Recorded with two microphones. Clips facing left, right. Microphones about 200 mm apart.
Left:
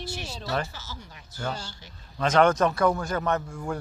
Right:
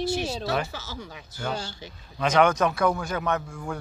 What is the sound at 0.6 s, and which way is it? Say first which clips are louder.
Speech: right 6 dB; 80° right.